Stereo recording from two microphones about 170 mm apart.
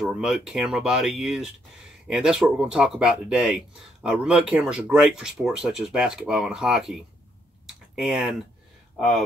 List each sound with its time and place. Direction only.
0.0 s speech: centre (ahead or behind)
7.6 s tick-tock: centre (ahead or behind)